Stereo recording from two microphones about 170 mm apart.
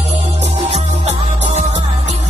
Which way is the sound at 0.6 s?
40° right (ahead or behind).